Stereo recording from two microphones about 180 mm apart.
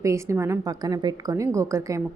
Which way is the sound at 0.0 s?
15° right (ahead or behind).